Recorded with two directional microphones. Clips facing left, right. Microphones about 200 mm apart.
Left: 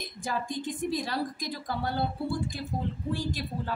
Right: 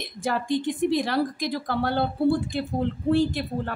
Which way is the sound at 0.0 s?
70° right (ahead or behind).